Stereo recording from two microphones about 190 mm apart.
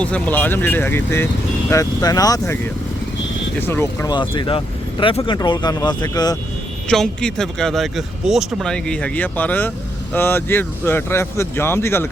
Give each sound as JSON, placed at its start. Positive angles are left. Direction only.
{"t": 0.0, "sound": "speech", "side_deg": 10}
{"t": 3.7, "sound": "speech", "side_deg": 10}
{"t": 4.1, "sound": "speech", "side_deg": 25}
{"t": 6.8, "sound": "speech", "side_deg": 5}